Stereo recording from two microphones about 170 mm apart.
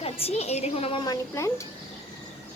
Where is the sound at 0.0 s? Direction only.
40° left (ahead or behind).